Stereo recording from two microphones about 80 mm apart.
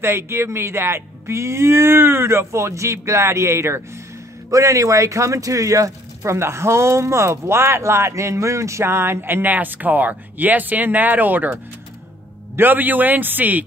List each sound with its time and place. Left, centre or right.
0.0 s a man's voice: right